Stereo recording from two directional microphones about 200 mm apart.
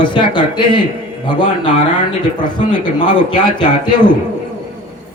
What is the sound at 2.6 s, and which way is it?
Speech, 30° left (ahead or behind).